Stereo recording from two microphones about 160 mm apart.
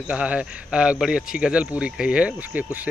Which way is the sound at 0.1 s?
5° right (ahead or behind).